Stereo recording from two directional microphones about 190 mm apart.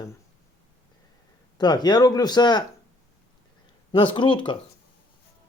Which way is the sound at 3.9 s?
25° left (ahead or behind).